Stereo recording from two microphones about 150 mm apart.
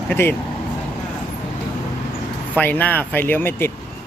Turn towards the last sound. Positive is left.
turn(degrees=15)  # may be behind; listen again after turning